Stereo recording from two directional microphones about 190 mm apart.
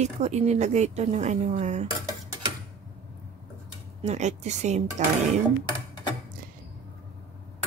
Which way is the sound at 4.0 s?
35° right (ahead or behind).